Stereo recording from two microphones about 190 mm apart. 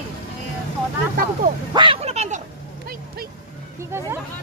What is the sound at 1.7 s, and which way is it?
Speech, 25° right (ahead or behind).